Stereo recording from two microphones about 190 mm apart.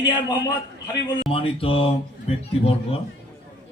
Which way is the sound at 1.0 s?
25° left (ahead or behind).